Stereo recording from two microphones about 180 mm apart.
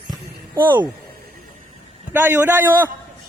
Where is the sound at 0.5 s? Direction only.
10° right (ahead or behind).